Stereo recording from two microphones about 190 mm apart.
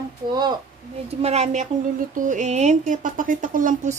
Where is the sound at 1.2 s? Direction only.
35° right (ahead or behind).